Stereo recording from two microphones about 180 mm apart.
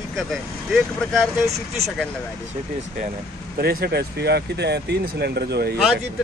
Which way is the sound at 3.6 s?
60° right (ahead or behind).